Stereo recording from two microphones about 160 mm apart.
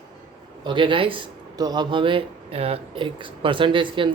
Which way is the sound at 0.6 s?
30° right (ahead or behind).